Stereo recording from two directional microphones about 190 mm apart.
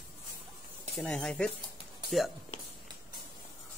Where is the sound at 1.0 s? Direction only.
5° left (ahead or behind).